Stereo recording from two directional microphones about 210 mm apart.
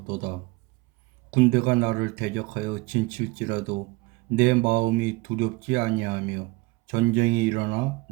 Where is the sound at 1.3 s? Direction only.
45° right (ahead or behind).